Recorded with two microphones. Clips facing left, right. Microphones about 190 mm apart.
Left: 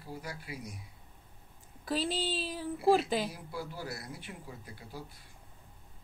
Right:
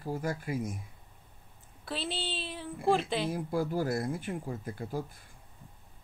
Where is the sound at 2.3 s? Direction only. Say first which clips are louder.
Left 3 dB; centre (ahead or behind).